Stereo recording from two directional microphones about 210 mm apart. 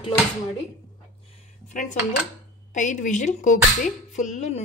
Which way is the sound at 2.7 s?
35° left (ahead or behind).